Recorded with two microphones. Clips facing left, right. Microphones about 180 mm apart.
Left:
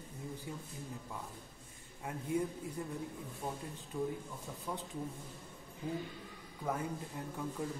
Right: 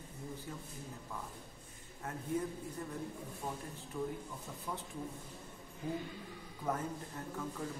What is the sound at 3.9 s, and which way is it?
Speech, 15° left (ahead or behind).